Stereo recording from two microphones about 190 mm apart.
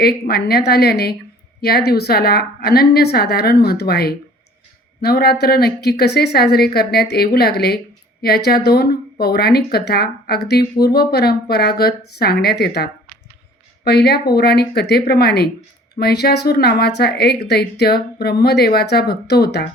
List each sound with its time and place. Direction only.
0.0 s speech: 55° left (ahead or behind)